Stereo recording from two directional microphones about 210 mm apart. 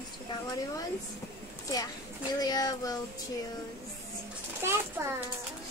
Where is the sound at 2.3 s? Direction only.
20° left (ahead or behind).